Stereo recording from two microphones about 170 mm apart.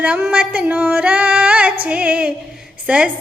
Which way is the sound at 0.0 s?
5° right (ahead or behind).